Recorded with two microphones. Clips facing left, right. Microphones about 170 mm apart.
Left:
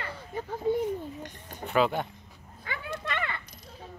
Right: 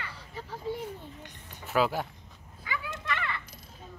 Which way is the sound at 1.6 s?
5° right (ahead or behind).